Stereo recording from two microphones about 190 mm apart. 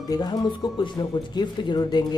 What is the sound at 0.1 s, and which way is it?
Speech, 20° left (ahead or behind).